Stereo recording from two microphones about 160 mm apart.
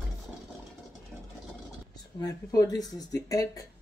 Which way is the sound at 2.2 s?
25° left (ahead or behind).